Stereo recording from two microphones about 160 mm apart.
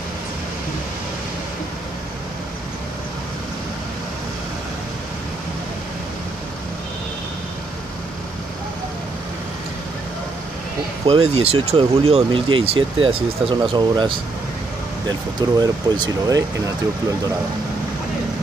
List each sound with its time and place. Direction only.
11.1 s speech: 40° right (ahead or behind)
15.6 s speech: 25° right (ahead or behind)